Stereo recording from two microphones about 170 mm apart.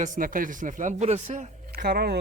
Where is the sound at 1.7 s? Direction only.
65° right (ahead or behind).